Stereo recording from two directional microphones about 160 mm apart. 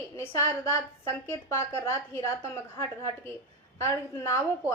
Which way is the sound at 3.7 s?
15° left (ahead or behind).